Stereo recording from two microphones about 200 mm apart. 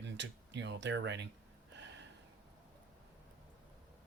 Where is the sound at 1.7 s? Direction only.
60° right (ahead or behind).